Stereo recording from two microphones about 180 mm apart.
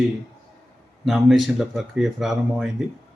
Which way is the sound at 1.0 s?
Centre (ahead or behind).